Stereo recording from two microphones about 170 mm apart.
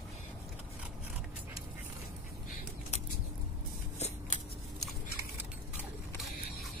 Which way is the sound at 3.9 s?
40° left (ahead or behind).